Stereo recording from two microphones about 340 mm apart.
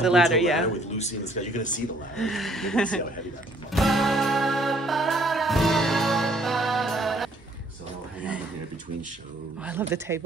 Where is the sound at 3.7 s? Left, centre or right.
Centre.